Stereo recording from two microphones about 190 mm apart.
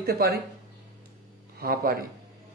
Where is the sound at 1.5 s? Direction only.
55° right (ahead or behind).